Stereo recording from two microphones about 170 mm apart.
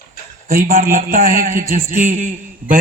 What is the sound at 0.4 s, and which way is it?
A man's voice, 55° right (ahead or behind).